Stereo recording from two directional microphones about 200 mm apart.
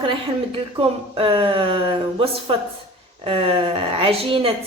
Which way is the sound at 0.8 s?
25° right (ahead or behind).